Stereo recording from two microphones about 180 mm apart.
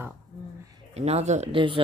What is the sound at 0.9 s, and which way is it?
Speech, 35° right (ahead or behind).